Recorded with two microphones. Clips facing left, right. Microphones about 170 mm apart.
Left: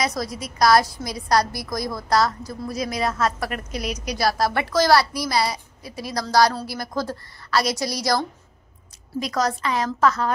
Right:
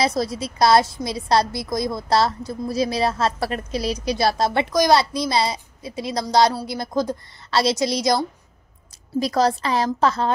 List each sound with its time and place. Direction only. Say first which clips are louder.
0.0 s a woman's voice: right 4 dB; 30° right (ahead or behind)
9.2 s a woman's voice: right 4 dB; 30° right (ahead or behind)